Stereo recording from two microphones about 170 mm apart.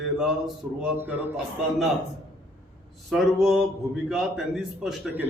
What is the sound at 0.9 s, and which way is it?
Speech, 10° right (ahead or behind).